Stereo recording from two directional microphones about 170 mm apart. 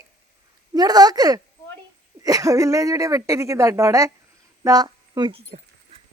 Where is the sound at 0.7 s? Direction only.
20° right (ahead or behind).